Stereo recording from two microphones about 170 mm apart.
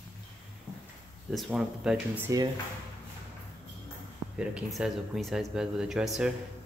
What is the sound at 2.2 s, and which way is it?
Speech, 20° right (ahead or behind).